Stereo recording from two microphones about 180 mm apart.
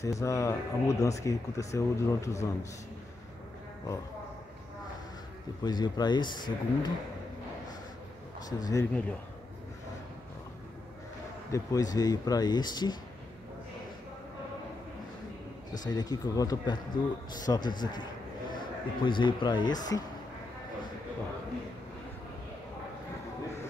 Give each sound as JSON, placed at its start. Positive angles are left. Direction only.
{"t": 0.0, "sound": "speech", "side_deg": 15}
{"t": 5.6, "sound": "speech", "side_deg": 25}
{"t": 8.5, "sound": "speech", "side_deg": 20}
{"t": 11.5, "sound": "speech", "side_deg": 20}
{"t": 15.8, "sound": "a man's voice", "side_deg": 20}